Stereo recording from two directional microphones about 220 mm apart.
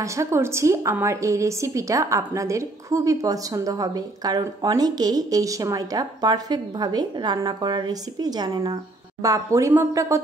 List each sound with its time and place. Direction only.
0.0 s a woman's voice: 15° right (ahead or behind)